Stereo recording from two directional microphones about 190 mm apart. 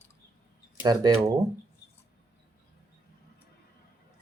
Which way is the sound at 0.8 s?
20° right (ahead or behind).